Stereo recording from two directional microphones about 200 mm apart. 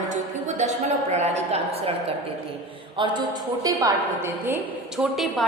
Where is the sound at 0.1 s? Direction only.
35° right (ahead or behind).